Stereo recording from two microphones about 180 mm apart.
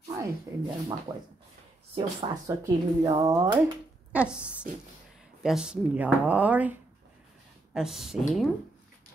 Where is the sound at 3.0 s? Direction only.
20° right (ahead or behind).